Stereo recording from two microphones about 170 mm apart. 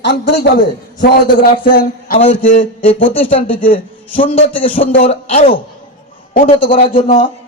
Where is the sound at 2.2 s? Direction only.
35° left (ahead or behind).